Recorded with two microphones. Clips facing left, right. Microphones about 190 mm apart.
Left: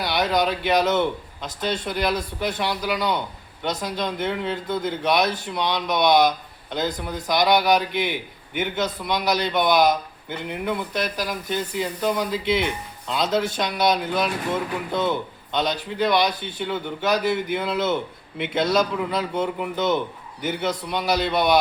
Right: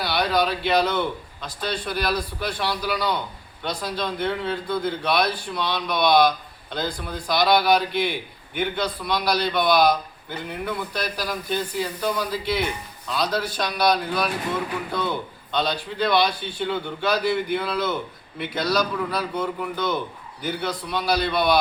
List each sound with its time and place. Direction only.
0.0 s a man's voice: 20° left (ahead or behind)
15.5 s a man's voice: 20° left (ahead or behind)